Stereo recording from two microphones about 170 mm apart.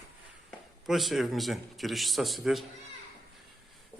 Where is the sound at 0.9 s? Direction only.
Centre (ahead or behind).